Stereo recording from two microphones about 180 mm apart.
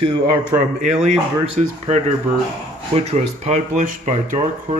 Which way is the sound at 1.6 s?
40° right (ahead or behind).